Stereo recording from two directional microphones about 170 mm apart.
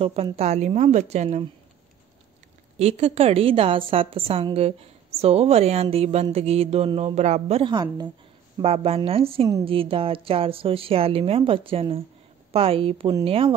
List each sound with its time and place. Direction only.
0.0 s speech: 35° right (ahead or behind)
2.8 s speech: 35° right (ahead or behind)